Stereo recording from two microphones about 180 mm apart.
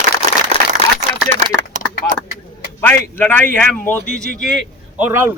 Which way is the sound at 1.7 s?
45° right (ahead or behind).